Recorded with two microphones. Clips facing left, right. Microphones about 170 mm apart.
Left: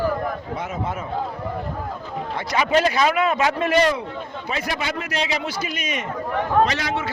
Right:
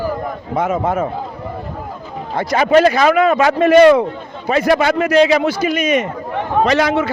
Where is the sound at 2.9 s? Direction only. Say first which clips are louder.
Right 7 dB; 75° right (ahead or behind).